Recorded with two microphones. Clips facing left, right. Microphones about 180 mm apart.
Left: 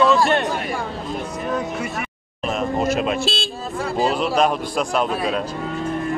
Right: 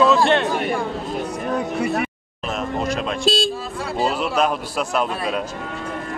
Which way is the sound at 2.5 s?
Centre (ahead or behind).